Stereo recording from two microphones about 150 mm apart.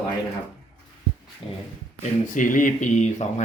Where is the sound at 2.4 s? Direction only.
60° left (ahead or behind).